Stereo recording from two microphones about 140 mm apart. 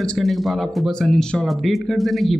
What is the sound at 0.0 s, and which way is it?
Speech, 5° left (ahead or behind).